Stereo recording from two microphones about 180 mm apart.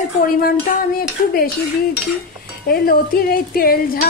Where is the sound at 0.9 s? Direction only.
55° left (ahead or behind).